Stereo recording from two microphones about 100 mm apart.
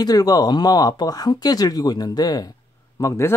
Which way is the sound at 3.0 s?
30° left (ahead or behind).